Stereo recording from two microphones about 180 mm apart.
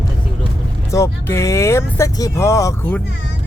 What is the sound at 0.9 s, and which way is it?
Speech, 15° left (ahead or behind).